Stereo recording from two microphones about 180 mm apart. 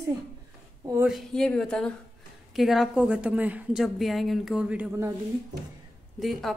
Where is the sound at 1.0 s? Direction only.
Centre (ahead or behind).